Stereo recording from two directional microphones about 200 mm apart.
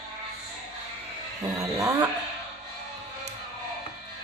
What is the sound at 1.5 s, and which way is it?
Music, 15° right (ahead or behind).